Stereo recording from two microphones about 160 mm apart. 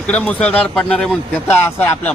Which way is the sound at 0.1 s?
5° left (ahead or behind).